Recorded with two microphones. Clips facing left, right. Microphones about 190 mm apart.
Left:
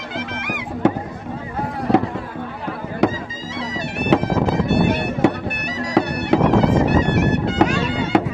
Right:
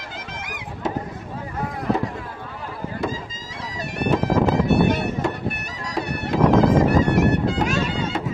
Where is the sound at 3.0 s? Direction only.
75° left (ahead or behind).